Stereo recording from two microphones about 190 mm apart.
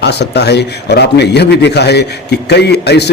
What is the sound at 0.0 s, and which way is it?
A man's voice, 60° left (ahead or behind).